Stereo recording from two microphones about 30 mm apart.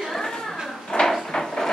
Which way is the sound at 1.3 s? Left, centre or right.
Centre.